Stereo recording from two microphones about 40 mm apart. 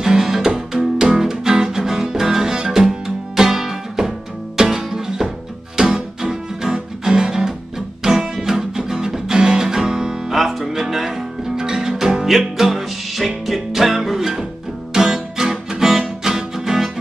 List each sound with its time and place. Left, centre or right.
0.0 s music: centre